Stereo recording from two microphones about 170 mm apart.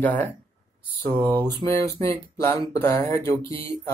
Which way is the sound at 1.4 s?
25° right (ahead or behind).